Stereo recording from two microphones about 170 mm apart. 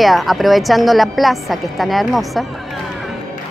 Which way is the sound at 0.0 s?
Centre (ahead or behind).